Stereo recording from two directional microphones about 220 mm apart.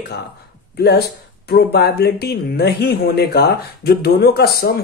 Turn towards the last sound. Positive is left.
turn(degrees=45)  # may be behind; listen again after turning